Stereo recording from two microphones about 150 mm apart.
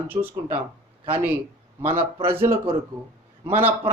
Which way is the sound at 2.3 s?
15° right (ahead or behind).